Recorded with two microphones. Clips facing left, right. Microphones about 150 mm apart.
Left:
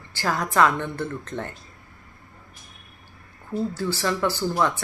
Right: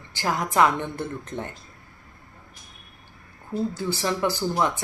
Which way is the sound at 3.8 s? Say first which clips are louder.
Left 2 dB; 15° right (ahead or behind).